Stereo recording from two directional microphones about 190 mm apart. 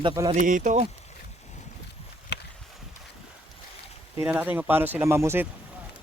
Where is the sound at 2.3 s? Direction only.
60° left (ahead or behind).